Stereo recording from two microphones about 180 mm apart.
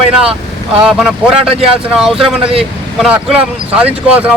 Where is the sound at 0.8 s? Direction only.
5° right (ahead or behind).